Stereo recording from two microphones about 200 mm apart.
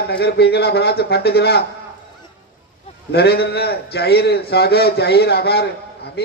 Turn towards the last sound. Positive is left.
turn(degrees=55)  # may be behind; listen again after turning